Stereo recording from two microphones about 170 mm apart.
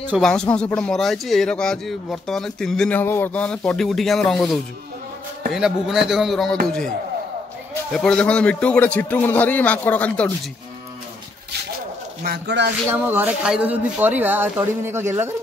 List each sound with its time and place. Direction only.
0.2 s speech: 5° left (ahead or behind)
7.9 s a man's voice: 5° left (ahead or behind)
12.3 s speech: 90° right
12.9 s speech: 10° right (ahead or behind)